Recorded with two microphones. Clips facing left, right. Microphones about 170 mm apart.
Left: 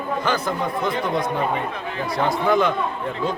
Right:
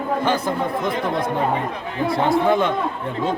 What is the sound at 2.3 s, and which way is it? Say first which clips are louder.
Speech: right 1 dB; 25° right (ahead or behind).